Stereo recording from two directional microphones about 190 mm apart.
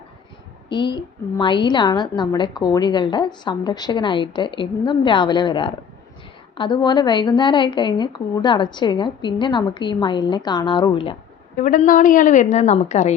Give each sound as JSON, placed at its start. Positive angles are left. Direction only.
{"t": 0.7, "sound": "a woman's voice", "side_deg": 25}
{"t": 11.5, "sound": "a woman's voice", "side_deg": 45}